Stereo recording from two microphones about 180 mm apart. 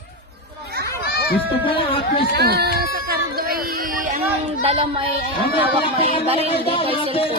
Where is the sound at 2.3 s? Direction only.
65° right (ahead or behind).